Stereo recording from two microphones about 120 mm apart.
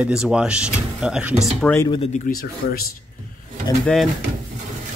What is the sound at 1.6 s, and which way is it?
Speech, 10° left (ahead or behind).